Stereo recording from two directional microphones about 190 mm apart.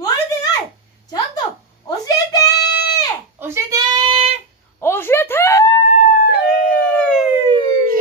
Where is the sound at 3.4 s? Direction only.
15° right (ahead or behind).